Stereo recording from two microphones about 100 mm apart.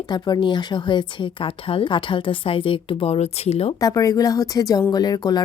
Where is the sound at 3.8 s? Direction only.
35° left (ahead or behind).